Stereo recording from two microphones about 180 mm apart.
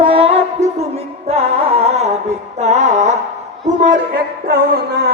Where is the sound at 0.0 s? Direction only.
30° right (ahead or behind).